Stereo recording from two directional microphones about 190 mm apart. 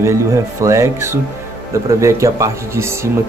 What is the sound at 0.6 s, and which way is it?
Speech, 15° right (ahead or behind).